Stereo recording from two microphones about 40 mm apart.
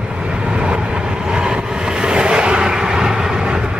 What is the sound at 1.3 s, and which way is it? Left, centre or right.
Vehicle, right.